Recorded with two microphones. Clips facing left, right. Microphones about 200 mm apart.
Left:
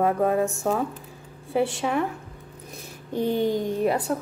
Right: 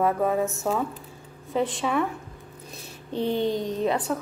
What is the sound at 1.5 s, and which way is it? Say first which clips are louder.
Speech: left 2 dB; 10° left (ahead or behind).